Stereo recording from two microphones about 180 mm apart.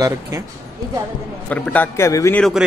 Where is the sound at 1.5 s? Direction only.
10° left (ahead or behind).